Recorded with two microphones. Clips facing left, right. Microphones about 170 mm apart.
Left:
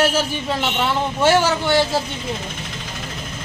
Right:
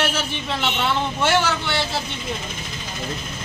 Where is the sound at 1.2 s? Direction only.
35° left (ahead or behind).